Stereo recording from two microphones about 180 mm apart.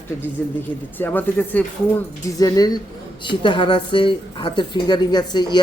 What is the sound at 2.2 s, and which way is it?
A woman's voice, 20° left (ahead or behind).